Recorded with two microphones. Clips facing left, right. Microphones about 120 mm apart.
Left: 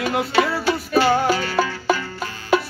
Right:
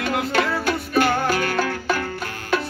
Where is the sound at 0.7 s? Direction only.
55° right (ahead or behind).